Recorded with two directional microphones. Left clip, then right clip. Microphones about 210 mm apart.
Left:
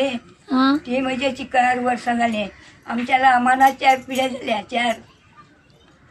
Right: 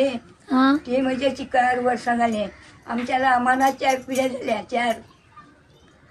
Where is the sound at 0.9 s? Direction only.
25° right (ahead or behind).